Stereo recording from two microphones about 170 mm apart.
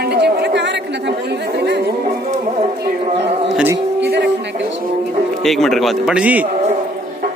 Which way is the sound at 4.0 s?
75° right (ahead or behind).